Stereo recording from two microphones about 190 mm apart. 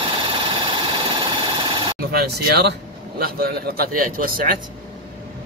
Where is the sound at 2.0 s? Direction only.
55° right (ahead or behind).